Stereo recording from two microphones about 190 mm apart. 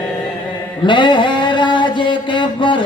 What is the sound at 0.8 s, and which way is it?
Mantra, 25° left (ahead or behind).